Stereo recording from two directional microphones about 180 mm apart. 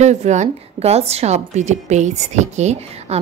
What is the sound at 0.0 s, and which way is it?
A woman's voice, 40° right (ahead or behind).